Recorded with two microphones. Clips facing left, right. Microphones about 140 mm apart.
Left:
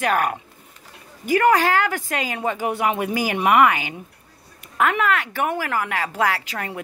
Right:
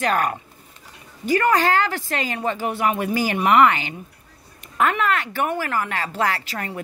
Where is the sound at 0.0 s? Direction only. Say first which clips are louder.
Even; 10° left (ahead or behind).